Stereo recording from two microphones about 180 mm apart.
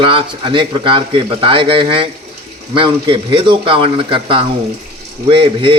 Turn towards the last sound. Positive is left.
turn(degrees=-30)  # may be behind; listen again after turning